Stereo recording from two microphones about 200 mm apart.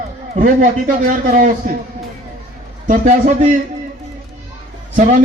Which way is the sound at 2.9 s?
40° right (ahead or behind).